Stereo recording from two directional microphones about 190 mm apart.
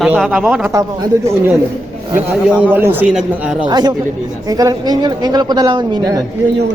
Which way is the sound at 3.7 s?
20° right (ahead or behind).